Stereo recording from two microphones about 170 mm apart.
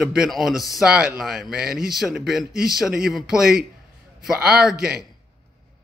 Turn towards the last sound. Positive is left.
turn(degrees=-5)  # may be behind; listen again after turning